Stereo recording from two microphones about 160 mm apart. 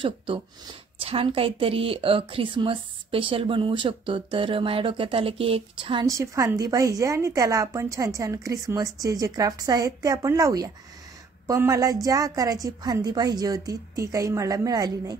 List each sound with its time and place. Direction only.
1.0 s a woman's voice: 35° right (ahead or behind)
6.0 s a woman's voice: 20° right (ahead or behind)